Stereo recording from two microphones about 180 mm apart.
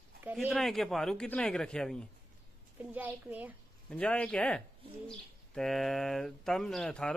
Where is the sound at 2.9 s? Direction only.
10° right (ahead or behind).